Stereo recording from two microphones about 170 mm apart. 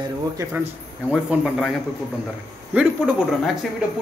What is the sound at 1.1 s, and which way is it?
Speech, centre (ahead or behind).